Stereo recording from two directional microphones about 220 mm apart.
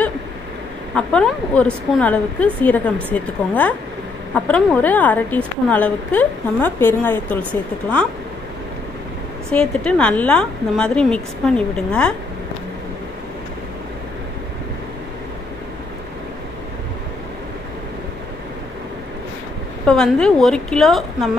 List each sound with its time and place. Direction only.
0.9 s a woman's voice: 5° left (ahead or behind)
9.5 s a woman's voice: 5° left (ahead or behind)
19.9 s a woman's voice: 5° left (ahead or behind)